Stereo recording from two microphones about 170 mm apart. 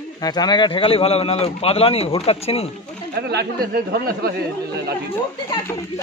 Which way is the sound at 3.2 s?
75° right (ahead or behind).